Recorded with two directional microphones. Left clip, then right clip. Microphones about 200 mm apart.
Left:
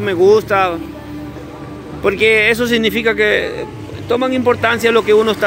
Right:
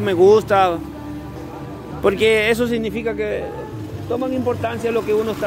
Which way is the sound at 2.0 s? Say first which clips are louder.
Left 4 dB; 15° right (ahead or behind).